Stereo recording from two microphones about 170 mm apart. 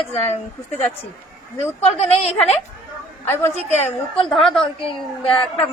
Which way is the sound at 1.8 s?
35° left (ahead or behind).